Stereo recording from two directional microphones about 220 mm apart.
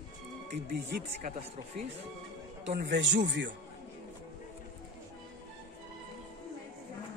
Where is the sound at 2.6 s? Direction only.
50° right (ahead or behind).